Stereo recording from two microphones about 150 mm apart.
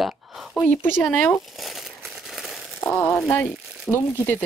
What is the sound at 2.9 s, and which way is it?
Speech, 20° left (ahead or behind).